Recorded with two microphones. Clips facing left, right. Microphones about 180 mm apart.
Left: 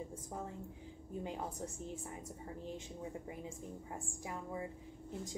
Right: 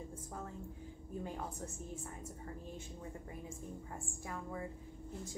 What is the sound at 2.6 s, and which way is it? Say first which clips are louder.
A woman's voice: left 3 dB; 15° left (ahead or behind).